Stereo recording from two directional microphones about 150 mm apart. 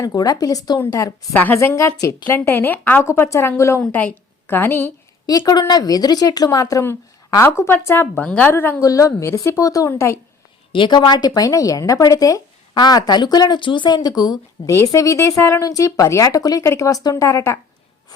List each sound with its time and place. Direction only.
0.0 s a woman's voice: 25° left (ahead or behind)
5.4 s speech: 25° left (ahead or behind)
10.7 s speech: 30° left (ahead or behind)